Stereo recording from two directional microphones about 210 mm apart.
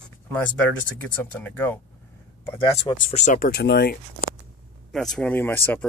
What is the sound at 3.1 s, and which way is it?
Speech, 35° left (ahead or behind).